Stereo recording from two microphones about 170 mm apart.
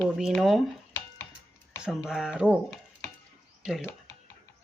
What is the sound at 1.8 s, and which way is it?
Speech, centre (ahead or behind).